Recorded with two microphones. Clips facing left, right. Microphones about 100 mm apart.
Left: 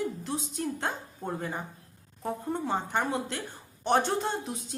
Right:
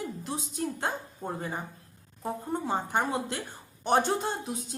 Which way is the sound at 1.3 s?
10° right (ahead or behind).